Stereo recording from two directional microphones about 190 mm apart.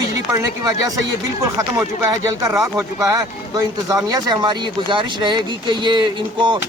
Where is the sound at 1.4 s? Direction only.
15° right (ahead or behind).